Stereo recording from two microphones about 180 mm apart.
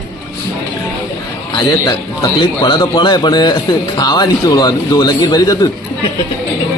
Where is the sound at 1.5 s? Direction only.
20° left (ahead or behind).